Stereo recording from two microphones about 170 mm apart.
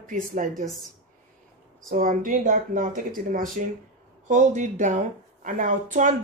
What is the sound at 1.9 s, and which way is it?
Speech, 55° right (ahead or behind).